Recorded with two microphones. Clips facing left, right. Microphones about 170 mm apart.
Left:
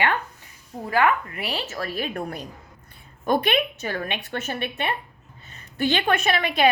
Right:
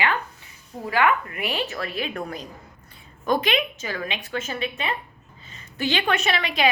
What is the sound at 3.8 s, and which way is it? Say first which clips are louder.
A woman's voice: left 2 dB; 55° left (ahead or behind).